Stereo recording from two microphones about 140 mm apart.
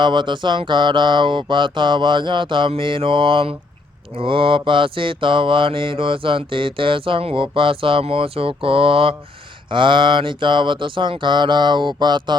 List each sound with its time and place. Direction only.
0.0 s mantra: 35° right (ahead or behind)